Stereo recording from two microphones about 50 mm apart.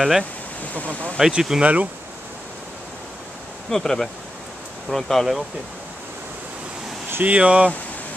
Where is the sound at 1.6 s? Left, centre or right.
Right.